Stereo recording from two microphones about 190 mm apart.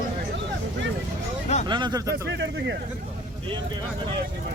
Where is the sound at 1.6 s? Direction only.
25° right (ahead or behind).